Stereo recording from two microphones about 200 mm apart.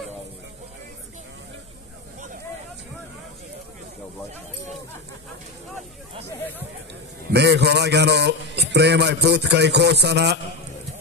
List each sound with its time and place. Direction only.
7.3 s a man's voice: 55° right (ahead or behind)